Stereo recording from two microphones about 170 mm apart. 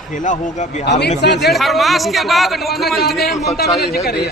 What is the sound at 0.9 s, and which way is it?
Speech, 85° left.